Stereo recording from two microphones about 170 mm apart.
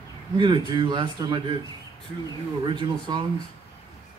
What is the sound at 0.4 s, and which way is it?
A man's voice, 25° right (ahead or behind).